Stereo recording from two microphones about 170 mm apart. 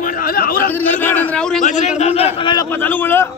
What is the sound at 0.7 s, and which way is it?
Speech, 10° left (ahead or behind).